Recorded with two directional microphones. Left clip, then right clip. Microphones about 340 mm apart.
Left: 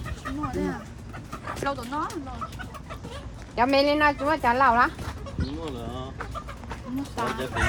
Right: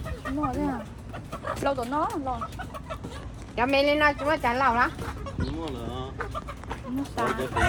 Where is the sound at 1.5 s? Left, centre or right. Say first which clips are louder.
Right 2 dB; centre.